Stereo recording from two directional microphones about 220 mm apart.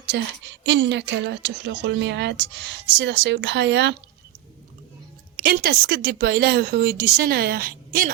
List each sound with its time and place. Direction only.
0.0 s a woman's voice: 50° right (ahead or behind)
5.4 s a woman's voice: 45° right (ahead or behind)